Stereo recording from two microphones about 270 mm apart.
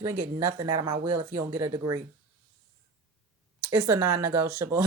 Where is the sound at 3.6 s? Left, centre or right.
Centre.